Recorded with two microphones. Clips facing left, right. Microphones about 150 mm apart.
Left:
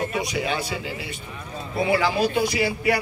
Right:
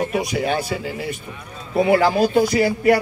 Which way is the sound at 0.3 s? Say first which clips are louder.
Right 5 dB; 50° right (ahead or behind).